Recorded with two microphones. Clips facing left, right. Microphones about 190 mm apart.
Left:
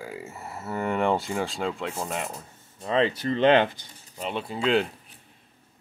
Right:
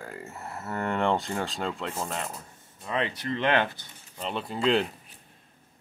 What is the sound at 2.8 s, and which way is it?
Speech, 30° left (ahead or behind).